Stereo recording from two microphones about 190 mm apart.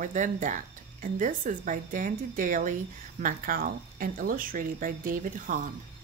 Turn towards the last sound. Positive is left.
turn(degrees=-45)  # may be behind; listen again after turning